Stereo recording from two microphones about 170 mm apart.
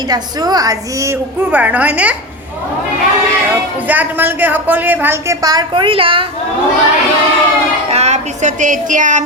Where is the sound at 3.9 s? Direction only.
10° right (ahead or behind); by 6.3 s 30° right (ahead or behind).